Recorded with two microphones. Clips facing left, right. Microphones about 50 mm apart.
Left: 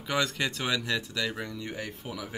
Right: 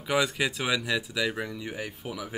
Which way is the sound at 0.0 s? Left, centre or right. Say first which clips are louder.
Right 3 dB; centre.